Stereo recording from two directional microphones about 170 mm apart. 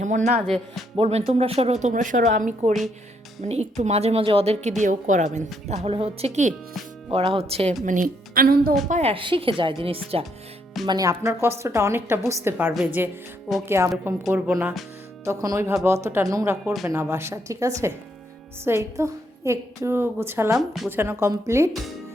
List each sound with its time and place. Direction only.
0.0 s speech: 45° right (ahead or behind)
0.4 s speech: centre (ahead or behind)
0.9 s a woman's voice: 35° right (ahead or behind)
4.8 s a woman's voice: 45° right (ahead or behind)
7.9 s a woman's voice: 55° right (ahead or behind)
8.9 s speech: 35° right (ahead or behind)
10.8 s a woman's voice: 20° right (ahead or behind)
20.6 s speech: centre (ahead or behind)
20.9 s a woman's voice: 10° right (ahead or behind)
21.7 s speech: centre (ahead or behind)